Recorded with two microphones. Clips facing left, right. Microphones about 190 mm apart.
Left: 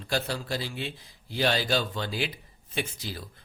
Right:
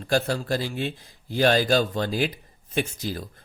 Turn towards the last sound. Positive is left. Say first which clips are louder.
# right 6 dB
turn(degrees=-45)  # may be behind; listen again after turning